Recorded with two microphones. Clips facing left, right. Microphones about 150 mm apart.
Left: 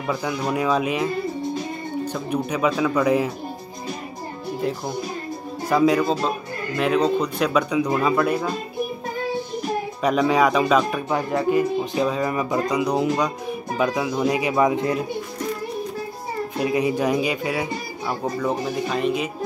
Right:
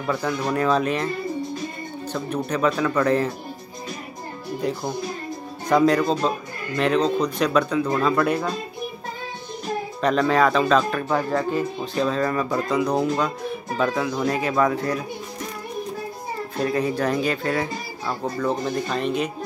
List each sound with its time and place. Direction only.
0.0 s speech: 10° left (ahead or behind)
2.1 s speech: 10° left (ahead or behind)
4.6 s speech: 5° left (ahead or behind)
10.0 s speech: 10° left (ahead or behind)
16.5 s speech: 10° left (ahead or behind)